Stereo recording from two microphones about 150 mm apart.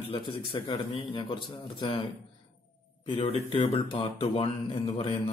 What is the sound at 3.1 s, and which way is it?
A man's voice, 35° left (ahead or behind).